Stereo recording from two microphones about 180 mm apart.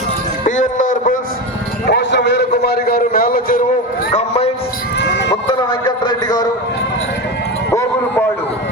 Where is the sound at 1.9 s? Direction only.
75° left (ahead or behind).